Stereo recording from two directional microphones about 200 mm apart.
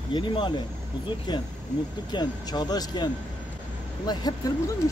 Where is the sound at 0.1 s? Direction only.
25° left (ahead or behind).